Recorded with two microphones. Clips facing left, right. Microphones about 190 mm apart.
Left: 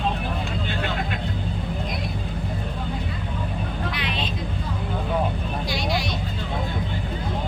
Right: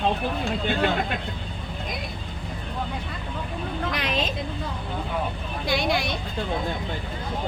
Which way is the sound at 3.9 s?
45° right (ahead or behind).